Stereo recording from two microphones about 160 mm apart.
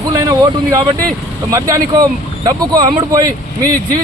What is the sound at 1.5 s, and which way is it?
Speech, 20° right (ahead or behind).